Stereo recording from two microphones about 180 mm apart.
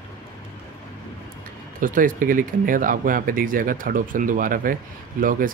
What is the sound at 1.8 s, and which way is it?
Speech, 50° right (ahead or behind).